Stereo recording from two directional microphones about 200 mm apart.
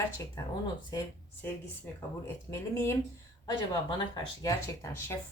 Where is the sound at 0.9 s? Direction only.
20° left (ahead or behind).